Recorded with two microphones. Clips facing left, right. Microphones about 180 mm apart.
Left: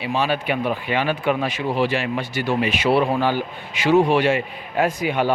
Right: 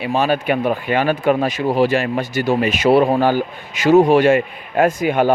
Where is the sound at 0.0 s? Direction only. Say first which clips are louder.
Right 4 dB; 45° right (ahead or behind).